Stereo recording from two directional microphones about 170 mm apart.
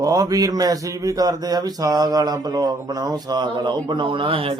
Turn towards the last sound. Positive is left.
turn(degrees=-30)  # may be behind; listen again after turning